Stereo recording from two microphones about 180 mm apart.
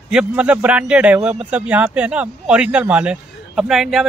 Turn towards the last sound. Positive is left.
turn(degrees=0)  # may be behind; listen again after turning